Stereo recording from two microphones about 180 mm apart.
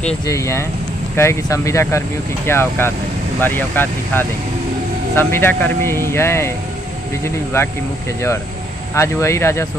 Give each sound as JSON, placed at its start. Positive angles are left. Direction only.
{"t": 0.3, "sound": "speech", "side_deg": 15}
{"t": 8.9, "sound": "speech", "side_deg": 15}